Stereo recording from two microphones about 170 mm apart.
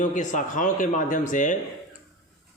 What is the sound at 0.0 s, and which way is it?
A man's voice, 45° left (ahead or behind).